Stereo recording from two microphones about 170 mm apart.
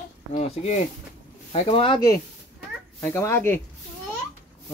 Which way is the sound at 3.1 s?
15° left (ahead or behind).